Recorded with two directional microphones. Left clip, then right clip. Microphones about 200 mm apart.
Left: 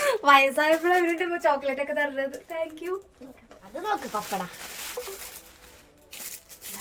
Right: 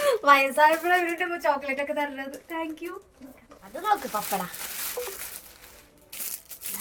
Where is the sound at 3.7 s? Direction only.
Centre (ahead or behind).